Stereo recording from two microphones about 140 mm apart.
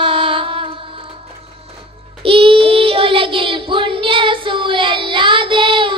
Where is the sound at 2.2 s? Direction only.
40° right (ahead or behind).